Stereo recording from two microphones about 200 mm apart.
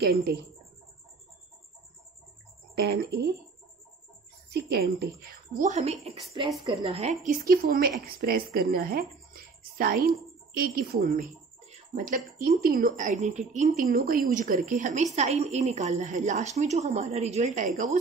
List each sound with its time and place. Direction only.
0.0 s a woman's voice: 55° right (ahead or behind)
2.7 s a woman's voice: 55° right (ahead or behind)
4.5 s a woman's voice: 55° right (ahead or behind)
5.6 s a woman's voice: 35° right (ahead or behind)
9.3 s a sound: 45° right (ahead or behind)
10.6 s a woman's voice: 50° right (ahead or behind)